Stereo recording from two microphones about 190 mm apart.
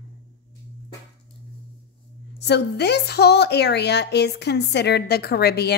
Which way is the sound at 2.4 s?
60° left (ahead or behind).